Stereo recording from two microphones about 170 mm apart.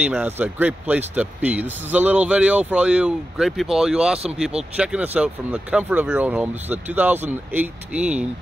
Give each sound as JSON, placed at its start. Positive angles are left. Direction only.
{"t": 0.0, "sound": "speech", "side_deg": -10}